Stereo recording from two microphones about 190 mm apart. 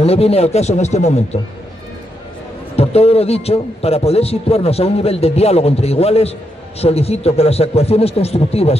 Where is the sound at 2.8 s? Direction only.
35° left (ahead or behind).